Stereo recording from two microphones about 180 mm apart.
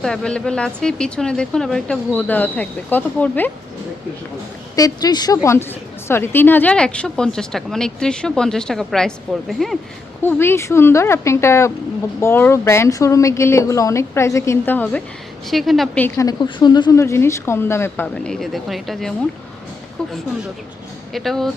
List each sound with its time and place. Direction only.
0.0 s a woman's voice: 5° left (ahead or behind)
4.7 s a woman's voice: 20° left (ahead or behind); by 9.7 s centre (ahead or behind)
10.2 s speech: 10° left (ahead or behind)
15.4 s a woman's voice: centre (ahead or behind)
16.0 s speech: 15° left (ahead or behind)
21.1 s a woman's voice: centre (ahead or behind)